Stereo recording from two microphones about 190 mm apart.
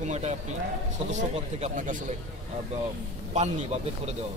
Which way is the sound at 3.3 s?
35° right (ahead or behind).